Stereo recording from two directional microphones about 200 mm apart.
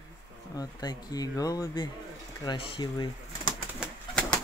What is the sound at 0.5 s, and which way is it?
Speech, 20° left (ahead or behind).